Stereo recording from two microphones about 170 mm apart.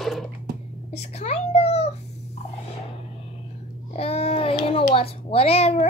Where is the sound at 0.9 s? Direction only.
40° left (ahead or behind).